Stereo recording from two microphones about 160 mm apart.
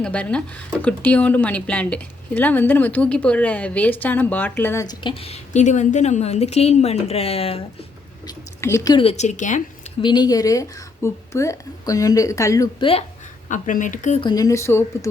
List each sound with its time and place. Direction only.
0.0 s speech: 5° left (ahead or behind); by 7.6 s 40° left (ahead or behind)
8.3 s speech: 20° left (ahead or behind); by 9.6 s 50° left (ahead or behind)
10.0 s speech: 25° left (ahead or behind)
12.8 s speech: 35° left (ahead or behind)
13.5 s speech: 55° left (ahead or behind)
14.2 s speech: 25° left (ahead or behind)